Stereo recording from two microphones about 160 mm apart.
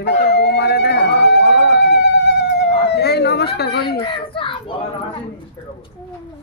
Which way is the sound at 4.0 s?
35° left (ahead or behind).